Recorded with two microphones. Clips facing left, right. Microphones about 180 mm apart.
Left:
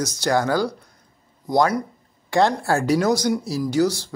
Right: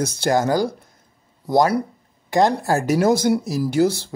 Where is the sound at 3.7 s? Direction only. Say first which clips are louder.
Right 2 dB; 55° right (ahead or behind).